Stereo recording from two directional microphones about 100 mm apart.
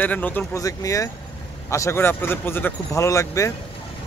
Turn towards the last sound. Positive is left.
turn(degrees=30)  # may be behind; listen again after turning